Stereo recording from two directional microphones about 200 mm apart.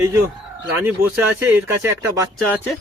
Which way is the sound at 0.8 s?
10° right (ahead or behind).